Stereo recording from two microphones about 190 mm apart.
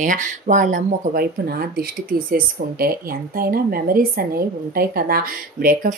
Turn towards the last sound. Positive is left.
turn(degrees=-50)  # may be behind; listen again after turning